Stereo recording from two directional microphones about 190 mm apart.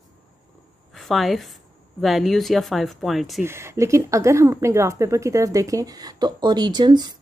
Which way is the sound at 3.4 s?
15° right (ahead or behind).